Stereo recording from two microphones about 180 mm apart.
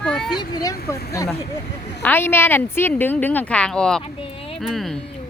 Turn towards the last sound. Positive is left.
turn(degrees=0)  # may be behind; listen again after turning